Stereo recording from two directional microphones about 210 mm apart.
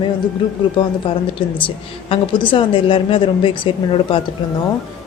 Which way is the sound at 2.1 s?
20° left (ahead or behind).